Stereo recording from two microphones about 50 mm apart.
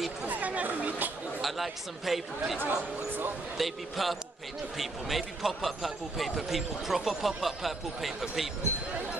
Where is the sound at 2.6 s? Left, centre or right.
Right.